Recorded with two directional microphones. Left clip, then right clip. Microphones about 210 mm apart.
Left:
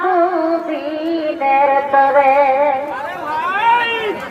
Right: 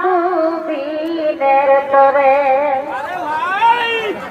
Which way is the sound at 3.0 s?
50° right (ahead or behind).